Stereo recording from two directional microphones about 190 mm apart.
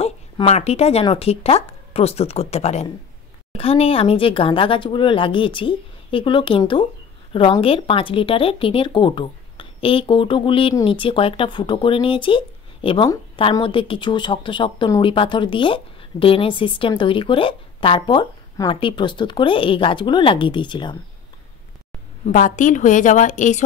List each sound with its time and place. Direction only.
0.0 s speech: 35° left (ahead or behind)
22.2 s speech: 45° left (ahead or behind)